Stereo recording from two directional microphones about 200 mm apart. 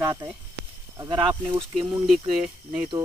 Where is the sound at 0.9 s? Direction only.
20° right (ahead or behind).